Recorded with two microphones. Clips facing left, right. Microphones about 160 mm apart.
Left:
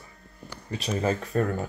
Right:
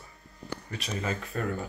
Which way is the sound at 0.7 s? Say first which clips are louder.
Left 7 dB; 35° left (ahead or behind).